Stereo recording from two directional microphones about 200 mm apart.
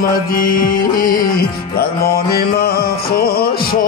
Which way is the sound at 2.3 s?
50° left (ahead or behind).